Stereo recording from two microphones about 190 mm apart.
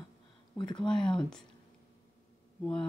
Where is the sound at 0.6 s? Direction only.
25° left (ahead or behind).